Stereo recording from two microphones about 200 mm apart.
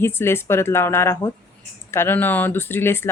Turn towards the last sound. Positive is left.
turn(degrees=10)  # may be behind; listen again after turning